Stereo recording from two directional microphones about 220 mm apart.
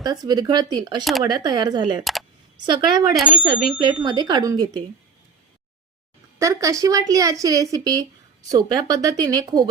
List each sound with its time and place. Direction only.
0.0 s speech: 15° right (ahead or behind)
3.2 s speech: centre (ahead or behind)
3.4 s speech: 20° right (ahead or behind)
6.4 s a woman's voice: 15° right (ahead or behind)